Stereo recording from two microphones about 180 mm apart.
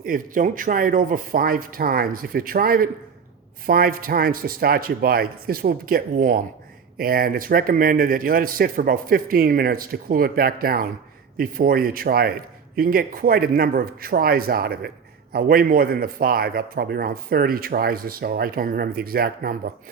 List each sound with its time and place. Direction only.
0.0 s a man's voice: 50° right (ahead or behind)